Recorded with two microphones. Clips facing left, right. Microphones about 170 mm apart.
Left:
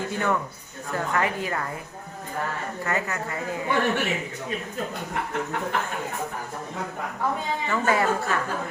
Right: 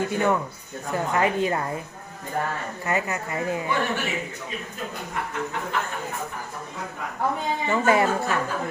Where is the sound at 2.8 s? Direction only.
20° right (ahead or behind).